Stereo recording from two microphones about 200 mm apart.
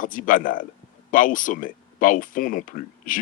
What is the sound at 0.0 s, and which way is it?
Speech, 40° left (ahead or behind).